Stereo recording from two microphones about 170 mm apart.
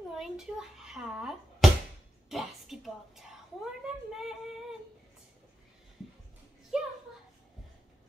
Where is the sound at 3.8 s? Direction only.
5° right (ahead or behind).